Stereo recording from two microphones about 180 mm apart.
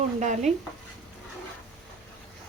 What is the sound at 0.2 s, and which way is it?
Speech, 40° right (ahead or behind).